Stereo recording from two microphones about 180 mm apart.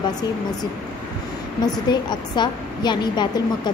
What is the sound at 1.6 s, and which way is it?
A woman's voice, 25° left (ahead or behind).